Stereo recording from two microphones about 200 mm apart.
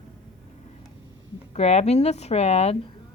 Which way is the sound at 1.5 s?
30° left (ahead or behind).